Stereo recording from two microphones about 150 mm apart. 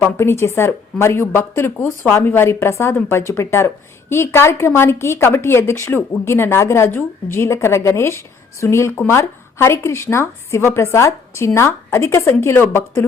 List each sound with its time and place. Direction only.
0.0 s speech: 15° left (ahead or behind)